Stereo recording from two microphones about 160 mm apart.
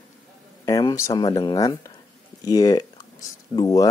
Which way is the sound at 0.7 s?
25° left (ahead or behind).